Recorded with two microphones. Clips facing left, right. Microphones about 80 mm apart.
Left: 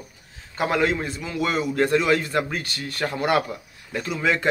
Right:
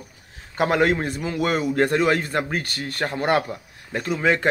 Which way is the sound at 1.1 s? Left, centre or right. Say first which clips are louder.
Right 2 dB; right.